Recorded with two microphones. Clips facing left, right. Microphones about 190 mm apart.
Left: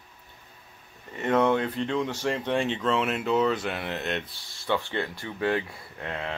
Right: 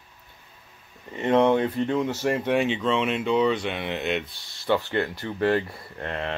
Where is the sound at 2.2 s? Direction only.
10° right (ahead or behind).